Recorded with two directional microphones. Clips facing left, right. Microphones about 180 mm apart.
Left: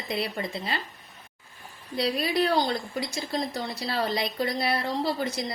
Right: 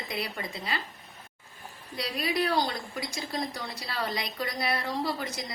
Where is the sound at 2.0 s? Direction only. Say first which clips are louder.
Left 4 dB; 30° left (ahead or behind).